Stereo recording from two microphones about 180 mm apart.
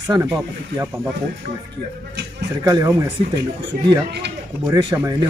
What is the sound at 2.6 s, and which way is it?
Speech, 20° right (ahead or behind).